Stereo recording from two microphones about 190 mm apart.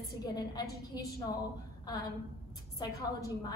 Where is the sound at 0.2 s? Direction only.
20° left (ahead or behind).